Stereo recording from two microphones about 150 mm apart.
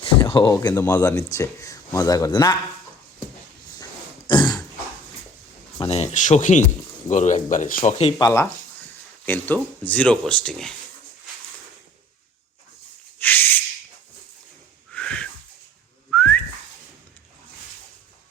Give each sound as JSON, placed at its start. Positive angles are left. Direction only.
{"t": 0.0, "sound": "speech", "side_deg": 35}
{"t": 4.3, "sound": "throat clearing", "side_deg": 30}
{"t": 5.8, "sound": "speech", "side_deg": 45}
{"t": 7.9, "sound": "speech", "side_deg": 45}
{"t": 8.2, "sound": "speech", "side_deg": 20}
{"t": 13.1, "sound": "a sound", "side_deg": 10}
{"t": 14.9, "sound": "whistling", "side_deg": 10}